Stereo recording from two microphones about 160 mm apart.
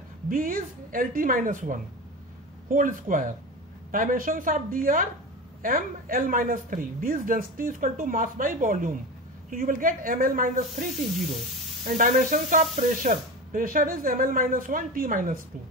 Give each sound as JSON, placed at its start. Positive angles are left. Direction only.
{"t": 0.3, "sound": "speech", "side_deg": -60}